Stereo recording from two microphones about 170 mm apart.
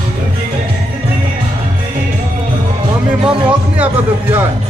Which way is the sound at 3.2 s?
5° right (ahead or behind).